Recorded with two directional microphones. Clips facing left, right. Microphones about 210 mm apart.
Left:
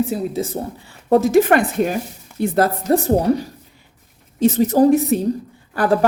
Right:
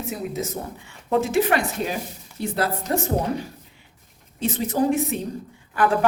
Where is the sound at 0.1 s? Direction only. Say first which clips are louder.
Left 6 dB; 30° left (ahead or behind); by 2.5 s 55° left (ahead or behind).